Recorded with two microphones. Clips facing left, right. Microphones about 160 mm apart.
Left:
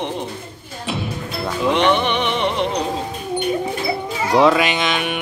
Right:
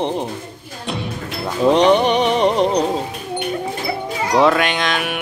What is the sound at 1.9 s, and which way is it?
Music, 35° right (ahead or behind).